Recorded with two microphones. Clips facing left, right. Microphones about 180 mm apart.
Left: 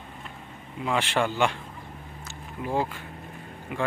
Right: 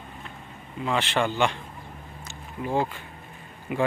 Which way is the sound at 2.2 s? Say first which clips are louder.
Right 1 dB; 5° left (ahead or behind).